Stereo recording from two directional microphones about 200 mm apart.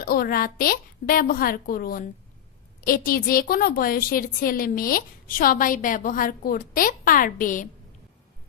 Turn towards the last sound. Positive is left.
turn(degrees=40)  # may be behind; listen again after turning